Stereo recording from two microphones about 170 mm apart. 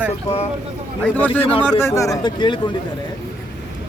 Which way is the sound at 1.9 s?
20° left (ahead or behind).